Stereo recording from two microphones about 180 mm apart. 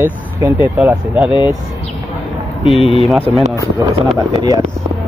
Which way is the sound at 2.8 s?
35° left (ahead or behind).